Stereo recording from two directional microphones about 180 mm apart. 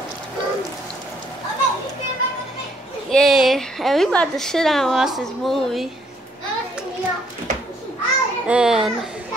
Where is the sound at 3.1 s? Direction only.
Centre (ahead or behind).